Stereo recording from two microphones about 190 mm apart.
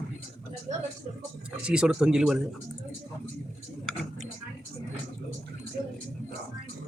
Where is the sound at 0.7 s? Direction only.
30° right (ahead or behind).